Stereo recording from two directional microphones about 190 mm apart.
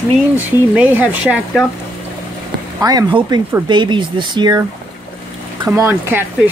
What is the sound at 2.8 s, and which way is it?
Speech, 25° right (ahead or behind).